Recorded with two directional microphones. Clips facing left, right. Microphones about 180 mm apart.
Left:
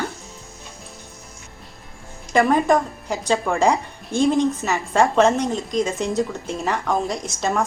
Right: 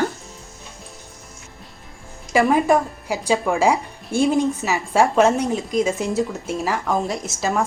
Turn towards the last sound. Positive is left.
turn(degrees=-5)  # may be behind; listen again after turning